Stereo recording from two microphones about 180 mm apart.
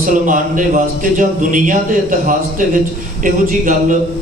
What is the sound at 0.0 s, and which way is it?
A man's voice, 45° right (ahead or behind).